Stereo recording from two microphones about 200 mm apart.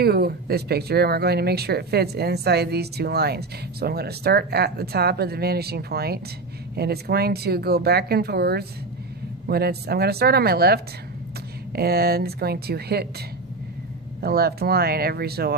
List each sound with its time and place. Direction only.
0.0 s speech: 50° right (ahead or behind)
14.2 s speech: 50° right (ahead or behind)